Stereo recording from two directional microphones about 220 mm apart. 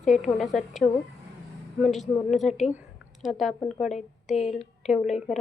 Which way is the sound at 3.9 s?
30° left (ahead or behind).